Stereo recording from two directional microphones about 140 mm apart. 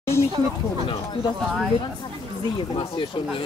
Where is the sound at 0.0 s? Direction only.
20° left (ahead or behind).